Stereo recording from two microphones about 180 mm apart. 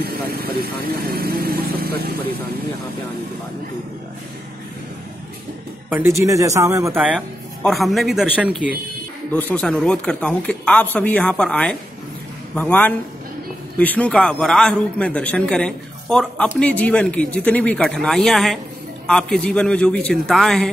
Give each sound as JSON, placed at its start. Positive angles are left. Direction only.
{"t": 0.0, "sound": "speech", "side_deg": -55}
{"t": 5.9, "sound": "a man's voice", "side_deg": -15}
{"t": 9.3, "sound": "a man's voice", "side_deg": 10}